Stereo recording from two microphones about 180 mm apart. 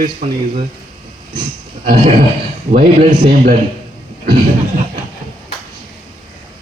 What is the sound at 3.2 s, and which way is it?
Speech, 50° right (ahead or behind).